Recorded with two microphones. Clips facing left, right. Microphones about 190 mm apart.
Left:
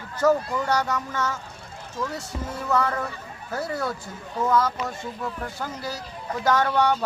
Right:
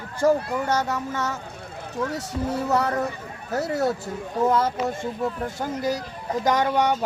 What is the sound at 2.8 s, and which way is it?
Speech, 35° right (ahead or behind).